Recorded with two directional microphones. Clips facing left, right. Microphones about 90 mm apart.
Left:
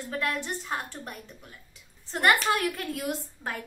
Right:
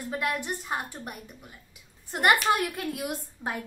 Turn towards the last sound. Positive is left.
turn(degrees=-15)  # may be behind; listen again after turning